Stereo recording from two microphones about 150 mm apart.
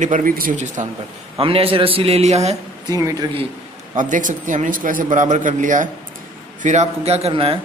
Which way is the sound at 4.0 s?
60° right (ahead or behind).